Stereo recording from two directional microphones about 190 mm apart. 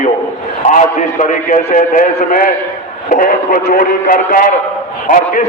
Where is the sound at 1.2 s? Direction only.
45° left (ahead or behind).